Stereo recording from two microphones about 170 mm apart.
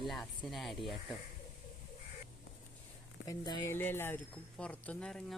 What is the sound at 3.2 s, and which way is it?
Speech, 20° left (ahead or behind).